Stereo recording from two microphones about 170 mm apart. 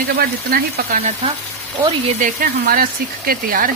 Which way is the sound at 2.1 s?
50° right (ahead or behind).